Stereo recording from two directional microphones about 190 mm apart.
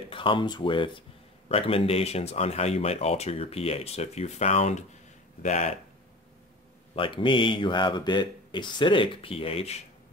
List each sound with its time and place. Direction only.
0.1 s speech: 25° left (ahead or behind)
7.0 s speech: 25° left (ahead or behind)